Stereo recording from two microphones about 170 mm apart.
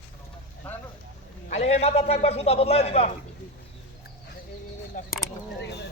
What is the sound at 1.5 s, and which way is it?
A man's voice, 40° left (ahead or behind).